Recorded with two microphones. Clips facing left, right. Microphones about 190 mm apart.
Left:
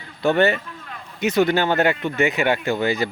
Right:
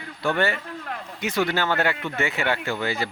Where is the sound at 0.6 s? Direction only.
60° right (ahead or behind).